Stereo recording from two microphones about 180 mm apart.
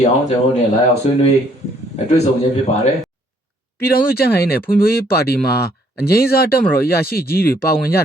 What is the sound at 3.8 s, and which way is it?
Speech, 55° left (ahead or behind).